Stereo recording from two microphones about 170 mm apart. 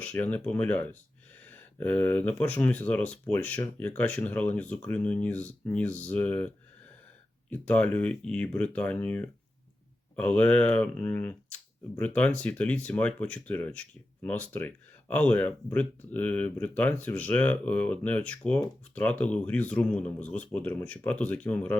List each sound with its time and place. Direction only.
0.0 s speech: 10° left (ahead or behind)